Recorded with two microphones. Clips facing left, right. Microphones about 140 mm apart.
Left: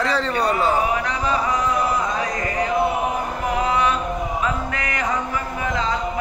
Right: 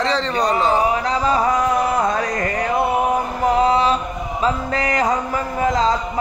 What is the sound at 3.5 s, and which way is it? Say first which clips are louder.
Chant: right 4 dB; 30° right (ahead or behind).